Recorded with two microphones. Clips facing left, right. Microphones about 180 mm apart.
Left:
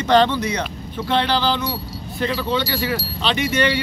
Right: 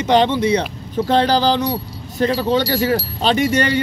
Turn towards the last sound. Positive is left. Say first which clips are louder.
# right 3 dB
turn(degrees=-45)  # may be behind; listen again after turning